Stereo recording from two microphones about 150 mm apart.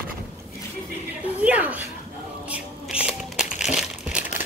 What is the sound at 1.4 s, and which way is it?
Speech, 10° right (ahead or behind).